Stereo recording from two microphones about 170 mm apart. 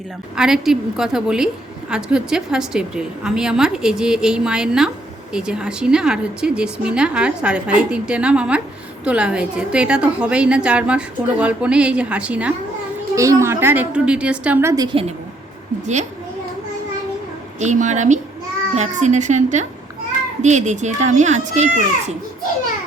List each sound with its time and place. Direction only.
0.3 s a woman's voice: centre (ahead or behind)
17.6 s a child's voice: 45° right (ahead or behind)